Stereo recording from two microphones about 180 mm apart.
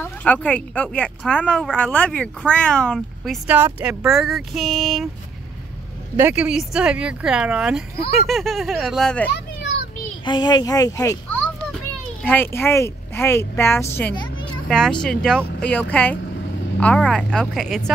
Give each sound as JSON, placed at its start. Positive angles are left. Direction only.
{"t": 0.0, "sound": "speech", "side_deg": 10}
{"t": 3.4, "sound": "speech", "side_deg": -10}
{"t": 6.1, "sound": "speech", "side_deg": -10}
{"t": 10.2, "sound": "a woman's voice", "side_deg": 25}